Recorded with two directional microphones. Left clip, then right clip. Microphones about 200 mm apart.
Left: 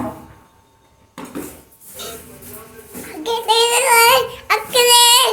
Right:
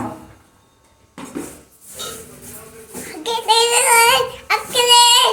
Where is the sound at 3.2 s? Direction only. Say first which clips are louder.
Even; centre (ahead or behind).